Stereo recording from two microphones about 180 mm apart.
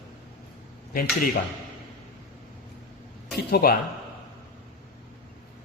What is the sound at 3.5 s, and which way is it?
Speech, 60° left (ahead or behind).